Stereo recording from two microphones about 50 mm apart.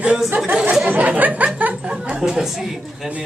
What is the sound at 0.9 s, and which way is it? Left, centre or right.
Speech, right.